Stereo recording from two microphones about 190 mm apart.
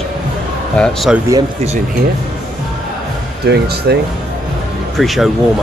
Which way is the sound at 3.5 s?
60° right (ahead or behind).